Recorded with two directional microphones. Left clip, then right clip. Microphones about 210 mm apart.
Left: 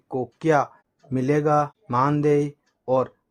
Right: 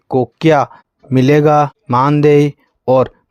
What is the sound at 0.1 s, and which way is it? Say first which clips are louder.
Speech: right 10 dB; 40° right (ahead or behind).